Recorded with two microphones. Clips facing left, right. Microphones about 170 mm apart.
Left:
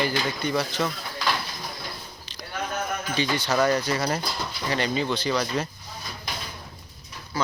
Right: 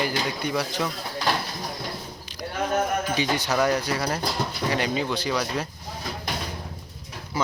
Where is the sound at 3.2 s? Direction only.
15° right (ahead or behind).